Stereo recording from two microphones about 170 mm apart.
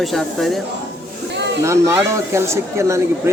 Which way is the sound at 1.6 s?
15° right (ahead or behind).